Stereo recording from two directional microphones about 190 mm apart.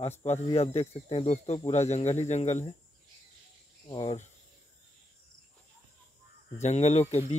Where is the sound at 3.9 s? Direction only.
20° left (ahead or behind).